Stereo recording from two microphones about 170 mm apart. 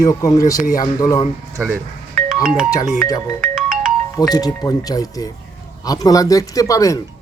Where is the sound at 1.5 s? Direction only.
15° right (ahead or behind).